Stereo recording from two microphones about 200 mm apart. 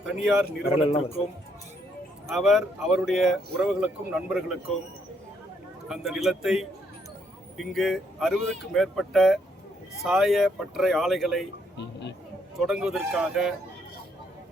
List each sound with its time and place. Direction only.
0.0 s speech: 5° right (ahead or behind)
2.3 s speech: centre (ahead or behind)
5.9 s speech: centre (ahead or behind)
12.5 s speech: centre (ahead or behind)